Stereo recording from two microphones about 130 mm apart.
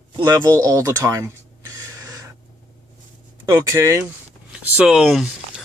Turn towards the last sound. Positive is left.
turn(degrees=-5)  # may be behind; listen again after turning